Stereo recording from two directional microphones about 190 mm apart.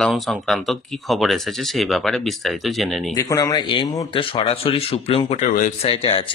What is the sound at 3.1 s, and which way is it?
Speech, 20° left (ahead or behind).